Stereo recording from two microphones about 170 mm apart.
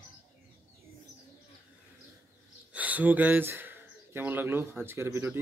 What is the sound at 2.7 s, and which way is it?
Speech, 10° right (ahead or behind).